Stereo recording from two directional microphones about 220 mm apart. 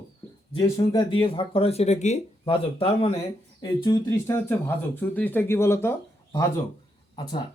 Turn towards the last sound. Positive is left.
turn(degrees=20)  # may be behind; listen again after turning